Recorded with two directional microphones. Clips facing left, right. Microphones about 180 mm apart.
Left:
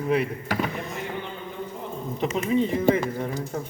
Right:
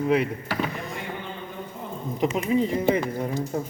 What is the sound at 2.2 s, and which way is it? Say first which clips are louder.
Speech: right 1 dB; 10° right (ahead or behind).